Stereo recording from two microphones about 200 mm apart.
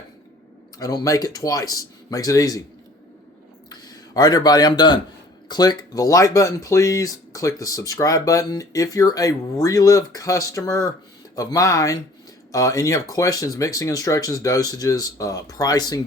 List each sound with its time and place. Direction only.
0.8 s speech: 20° left (ahead or behind)
3.7 s speech: 20° left (ahead or behind)